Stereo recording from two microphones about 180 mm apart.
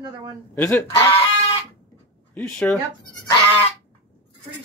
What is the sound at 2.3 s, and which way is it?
Speech, 5° left (ahead or behind).